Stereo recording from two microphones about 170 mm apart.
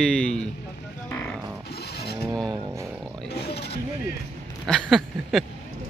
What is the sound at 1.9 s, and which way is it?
Mechanisms, 70° left (ahead or behind).